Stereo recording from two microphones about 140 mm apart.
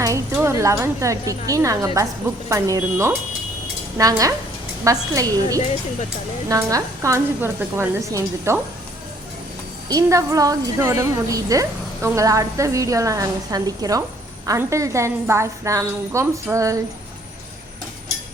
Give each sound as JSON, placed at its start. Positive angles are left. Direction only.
{"t": 0.0, "sound": "speech", "side_deg": -20}
{"t": 9.9, "sound": "speech", "side_deg": -20}